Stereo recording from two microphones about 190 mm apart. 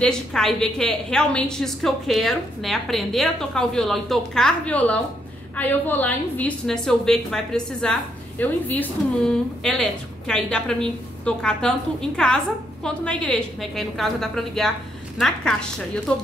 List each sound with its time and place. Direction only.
0.0 s a woman's voice: 5° left (ahead or behind)